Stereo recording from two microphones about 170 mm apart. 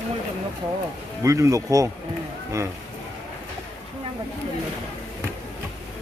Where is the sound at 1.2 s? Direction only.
20° right (ahead or behind).